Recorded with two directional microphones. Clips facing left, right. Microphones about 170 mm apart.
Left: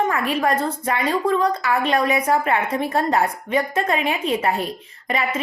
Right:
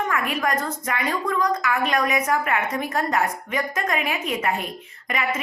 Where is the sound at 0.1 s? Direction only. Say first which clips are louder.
Left 3 dB; 30° left (ahead or behind).